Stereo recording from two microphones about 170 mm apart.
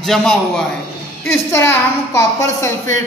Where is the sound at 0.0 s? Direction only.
5° left (ahead or behind).